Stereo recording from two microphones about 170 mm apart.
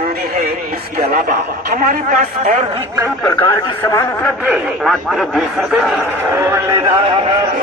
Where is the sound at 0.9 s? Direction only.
65° right (ahead or behind).